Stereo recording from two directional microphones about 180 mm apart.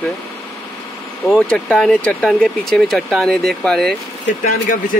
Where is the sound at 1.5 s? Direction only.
5° left (ahead or behind).